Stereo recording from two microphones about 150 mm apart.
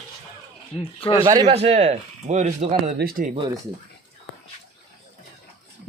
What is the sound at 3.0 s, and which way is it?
Speech, 90° right.